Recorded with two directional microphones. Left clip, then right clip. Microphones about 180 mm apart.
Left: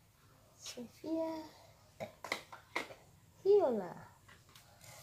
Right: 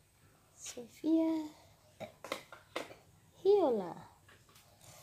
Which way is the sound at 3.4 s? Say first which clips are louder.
Right 1 dB; 50° right (ahead or behind).